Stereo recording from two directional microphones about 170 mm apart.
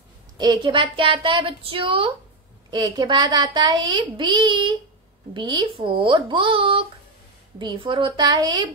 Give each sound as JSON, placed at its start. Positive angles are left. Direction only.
{"t": 0.4, "sound": "a woman's voice", "side_deg": -25}